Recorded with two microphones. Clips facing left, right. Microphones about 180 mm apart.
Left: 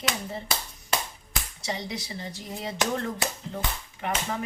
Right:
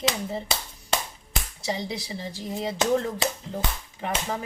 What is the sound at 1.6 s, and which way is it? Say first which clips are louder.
Speech: right 3 dB; 30° right (ahead or behind).